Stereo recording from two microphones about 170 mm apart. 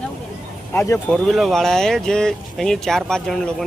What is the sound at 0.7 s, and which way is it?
Speech, 15° left (ahead or behind).